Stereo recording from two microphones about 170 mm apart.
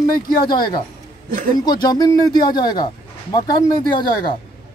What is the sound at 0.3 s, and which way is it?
Speech, 60° left (ahead or behind).